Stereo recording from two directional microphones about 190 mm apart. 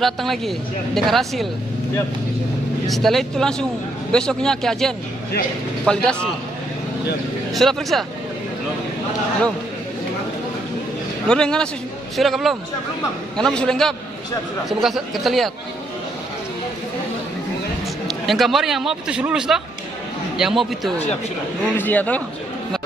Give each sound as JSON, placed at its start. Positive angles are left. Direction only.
{"t": 0.0, "sound": "speech", "side_deg": 0}
{"t": 2.9, "sound": "speech", "side_deg": 0}
{"t": 7.5, "sound": "speech", "side_deg": 0}
{"t": 11.2, "sound": "speech", "side_deg": 5}
{"t": 18.0, "sound": "speech", "side_deg": 0}
{"t": 21.7, "sound": "a man's voice", "side_deg": 10}